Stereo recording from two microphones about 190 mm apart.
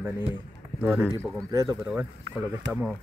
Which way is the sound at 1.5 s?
20° right (ahead or behind).